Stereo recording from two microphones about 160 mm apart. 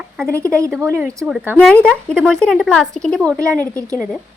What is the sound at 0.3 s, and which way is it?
Speech, 15° right (ahead or behind).